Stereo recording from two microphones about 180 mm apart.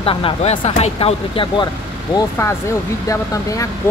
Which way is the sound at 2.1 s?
15° left (ahead or behind).